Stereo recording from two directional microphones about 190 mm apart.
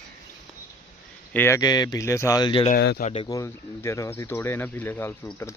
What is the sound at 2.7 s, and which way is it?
Speech, 55° left (ahead or behind).